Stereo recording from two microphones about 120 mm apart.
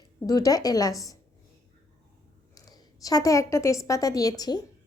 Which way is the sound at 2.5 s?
30° left (ahead or behind).